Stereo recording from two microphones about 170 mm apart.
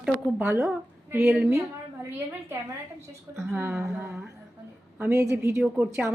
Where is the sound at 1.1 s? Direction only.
15° right (ahead or behind).